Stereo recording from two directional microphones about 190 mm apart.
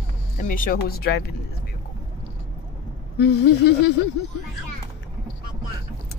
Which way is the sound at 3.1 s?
60° left (ahead or behind).